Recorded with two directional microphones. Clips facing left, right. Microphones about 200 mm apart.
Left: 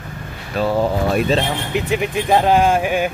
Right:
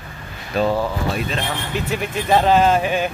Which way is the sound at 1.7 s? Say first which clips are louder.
Left 5 dB; 15° left (ahead or behind).